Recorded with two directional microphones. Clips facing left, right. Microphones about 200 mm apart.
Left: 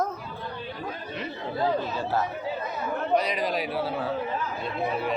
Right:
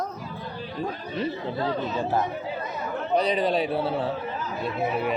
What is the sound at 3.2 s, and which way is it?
Speech, 30° right (ahead or behind).